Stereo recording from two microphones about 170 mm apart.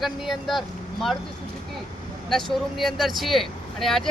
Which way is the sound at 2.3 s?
Centre (ahead or behind).